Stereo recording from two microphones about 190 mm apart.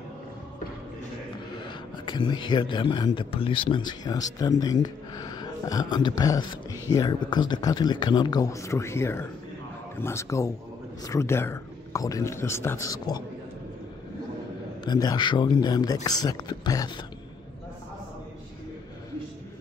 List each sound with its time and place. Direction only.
1.6 s a man's voice: 25° left (ahead or behind)
14.9 s a man's voice: 20° left (ahead or behind)